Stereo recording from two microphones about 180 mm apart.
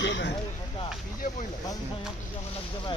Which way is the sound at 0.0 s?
80° left.